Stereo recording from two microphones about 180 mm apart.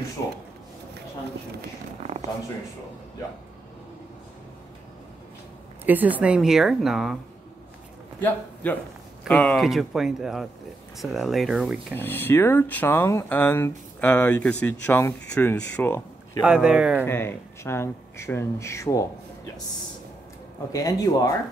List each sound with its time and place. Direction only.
5.9 s a woman's voice: 10° right (ahead or behind)
8.2 s a man's voice: 10° left (ahead or behind)
11.9 s speech: 10° left (ahead or behind)
16.3 s a woman's voice: 5° right (ahead or behind)
17.0 s speech: 10° left (ahead or behind)
20.7 s speech: 20° left (ahead or behind)